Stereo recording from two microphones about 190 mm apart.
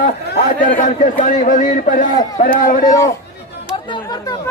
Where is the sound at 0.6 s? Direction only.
45° left (ahead or behind).